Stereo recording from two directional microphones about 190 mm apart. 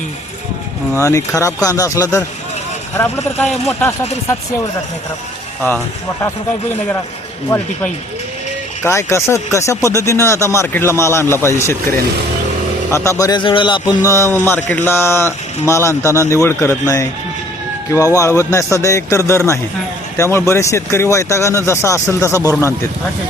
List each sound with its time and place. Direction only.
0.9 s speech: 15° left (ahead or behind)
8.8 s a man's voice: 15° left (ahead or behind)
14.0 s speech: 15° left (ahead or behind)